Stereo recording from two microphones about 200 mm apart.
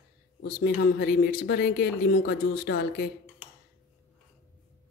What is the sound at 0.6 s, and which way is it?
Speech, 50° left (ahead or behind).